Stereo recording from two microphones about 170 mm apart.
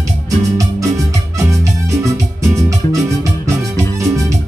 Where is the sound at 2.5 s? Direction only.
20° right (ahead or behind).